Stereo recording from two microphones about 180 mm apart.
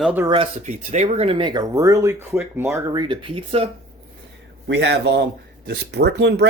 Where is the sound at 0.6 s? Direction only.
40° right (ahead or behind).